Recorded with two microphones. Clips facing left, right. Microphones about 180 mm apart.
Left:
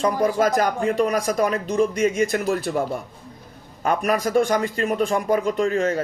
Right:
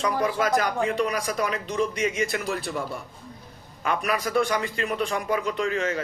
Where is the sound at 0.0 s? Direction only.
45° left (ahead or behind).